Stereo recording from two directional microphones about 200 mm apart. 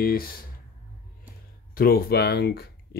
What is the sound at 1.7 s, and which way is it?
Speech, 50° left (ahead or behind).